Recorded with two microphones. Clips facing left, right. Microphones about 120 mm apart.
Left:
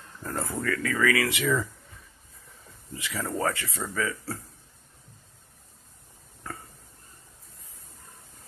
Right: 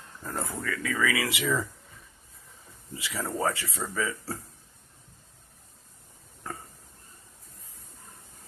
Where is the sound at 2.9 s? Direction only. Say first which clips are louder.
Left 1 dB; 20° right (ahead or behind).